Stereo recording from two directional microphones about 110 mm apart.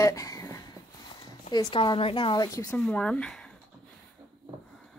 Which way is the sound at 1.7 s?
50° left (ahead or behind).